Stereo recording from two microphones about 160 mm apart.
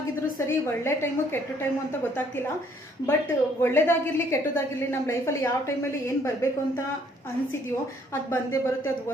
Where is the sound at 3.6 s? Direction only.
15° left (ahead or behind).